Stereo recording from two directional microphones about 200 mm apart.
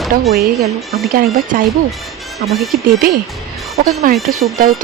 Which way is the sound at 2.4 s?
Centre (ahead or behind).